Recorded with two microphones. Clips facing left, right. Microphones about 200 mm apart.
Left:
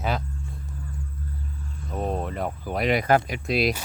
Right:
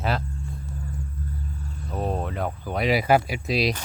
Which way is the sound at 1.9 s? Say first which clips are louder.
Even; centre (ahead or behind).